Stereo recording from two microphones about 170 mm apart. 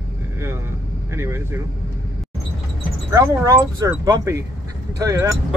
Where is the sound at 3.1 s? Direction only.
20° right (ahead or behind).